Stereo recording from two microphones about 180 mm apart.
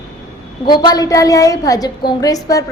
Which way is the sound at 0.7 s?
20° left (ahead or behind).